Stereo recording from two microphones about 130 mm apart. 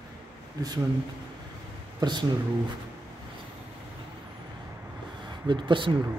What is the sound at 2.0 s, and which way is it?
Speech, 35° right (ahead or behind).